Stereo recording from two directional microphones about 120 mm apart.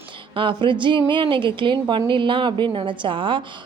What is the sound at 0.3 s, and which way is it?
A woman's voice, 45° right (ahead or behind).